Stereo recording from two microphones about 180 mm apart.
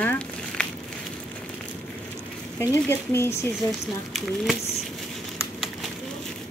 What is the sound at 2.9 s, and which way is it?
Speech, 15° left (ahead or behind).